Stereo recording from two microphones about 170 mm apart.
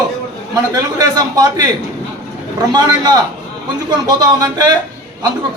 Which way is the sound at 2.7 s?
25° right (ahead or behind).